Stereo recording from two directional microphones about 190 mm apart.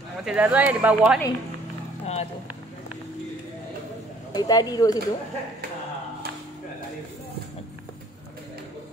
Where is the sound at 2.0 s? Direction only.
35° left (ahead or behind).